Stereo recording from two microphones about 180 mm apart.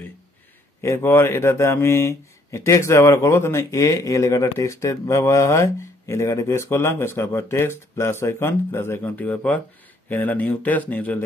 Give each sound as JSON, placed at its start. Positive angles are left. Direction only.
{"t": 0.7, "sound": "speech", "side_deg": 15}